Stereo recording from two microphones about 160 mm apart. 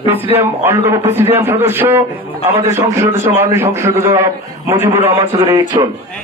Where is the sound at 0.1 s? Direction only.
10° right (ahead or behind).